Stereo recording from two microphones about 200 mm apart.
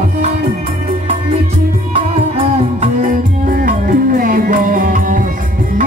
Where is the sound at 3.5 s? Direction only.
45° right (ahead or behind).